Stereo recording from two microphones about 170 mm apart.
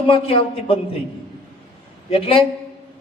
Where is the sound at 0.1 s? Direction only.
35° left (ahead or behind).